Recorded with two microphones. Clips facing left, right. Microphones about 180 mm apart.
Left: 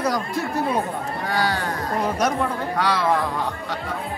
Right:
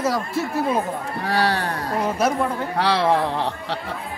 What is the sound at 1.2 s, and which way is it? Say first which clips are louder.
Speech: right 3 dB; 35° right (ahead or behind).